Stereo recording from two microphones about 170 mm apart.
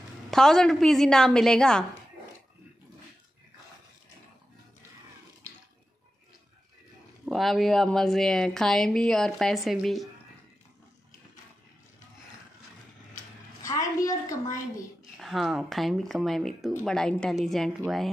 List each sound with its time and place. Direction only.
0.3 s speech: 5° left (ahead or behind)
7.2 s speech: centre (ahead or behind)
13.6 s a sound: 20° left (ahead or behind)
15.1 s speech: centre (ahead or behind)